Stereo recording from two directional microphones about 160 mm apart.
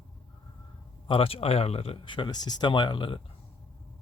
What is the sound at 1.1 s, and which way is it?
Speech, 35° left (ahead or behind).